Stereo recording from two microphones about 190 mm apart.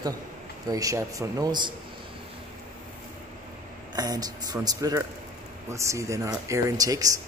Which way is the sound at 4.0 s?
20° right (ahead or behind).